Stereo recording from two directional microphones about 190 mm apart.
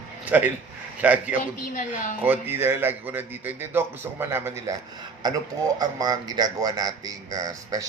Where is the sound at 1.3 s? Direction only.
45° left (ahead or behind).